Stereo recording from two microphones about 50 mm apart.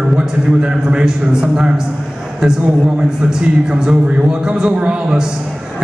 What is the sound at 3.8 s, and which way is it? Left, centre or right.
A man's voice, centre.